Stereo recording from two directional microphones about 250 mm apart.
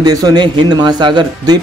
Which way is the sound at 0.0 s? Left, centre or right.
Centre.